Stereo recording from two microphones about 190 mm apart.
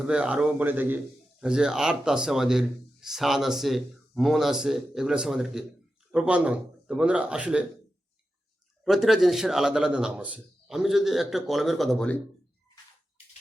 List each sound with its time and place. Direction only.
0.0 s a man's voice: 5° right (ahead or behind)
8.8 s speech: centre (ahead or behind)